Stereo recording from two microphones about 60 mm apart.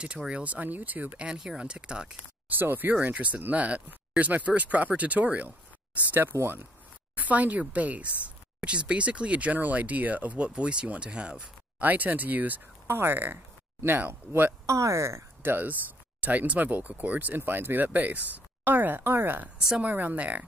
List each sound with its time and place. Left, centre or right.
0.3 s speech: right
1.2 s speech: centre
2.5 s speech: right
6.3 s speech: right
7.2 s speech: right
14.7 s speech: right
15.4 s speech: right